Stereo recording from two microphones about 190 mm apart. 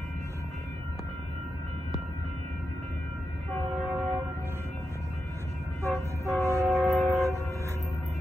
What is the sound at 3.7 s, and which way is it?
Train, centre (ahead or behind).